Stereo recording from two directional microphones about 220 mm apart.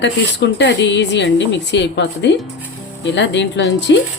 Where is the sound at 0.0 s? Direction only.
55° left (ahead or behind).